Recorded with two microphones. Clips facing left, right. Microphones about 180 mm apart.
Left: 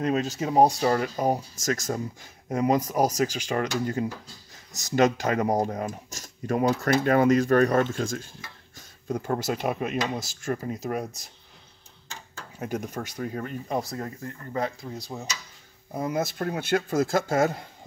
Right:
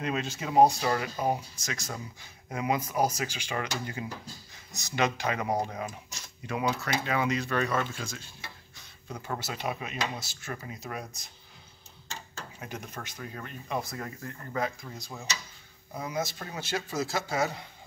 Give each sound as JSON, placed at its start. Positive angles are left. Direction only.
{"t": 0.0, "sound": "speech", "side_deg": 40}
{"t": 12.5, "sound": "speech", "side_deg": 45}
{"t": 15.9, "sound": "speech", "side_deg": 50}